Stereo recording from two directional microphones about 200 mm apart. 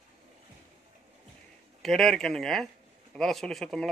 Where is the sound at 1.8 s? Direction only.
Centre (ahead or behind).